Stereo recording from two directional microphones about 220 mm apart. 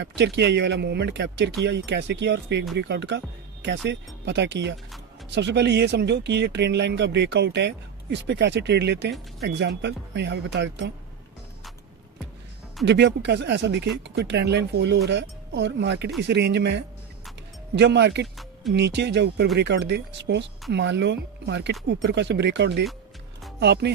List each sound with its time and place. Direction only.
0.0 s speech: 50° right (ahead or behind)
12.8 s speech: 50° right (ahead or behind)